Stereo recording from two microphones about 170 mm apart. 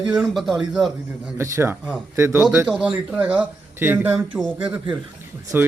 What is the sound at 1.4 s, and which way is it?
Speech, 15° right (ahead or behind).